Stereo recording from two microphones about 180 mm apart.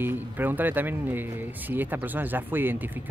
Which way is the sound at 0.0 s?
10° right (ahead or behind).